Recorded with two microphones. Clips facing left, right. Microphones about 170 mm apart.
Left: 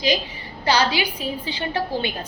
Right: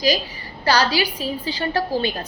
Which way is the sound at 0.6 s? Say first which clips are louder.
Right 1 dB; 15° left (ahead or behind).